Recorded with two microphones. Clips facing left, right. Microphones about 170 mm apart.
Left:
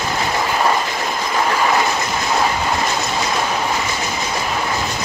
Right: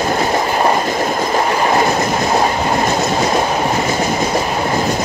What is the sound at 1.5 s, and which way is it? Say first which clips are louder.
Train: right 2 dB; 35° right (ahead or behind).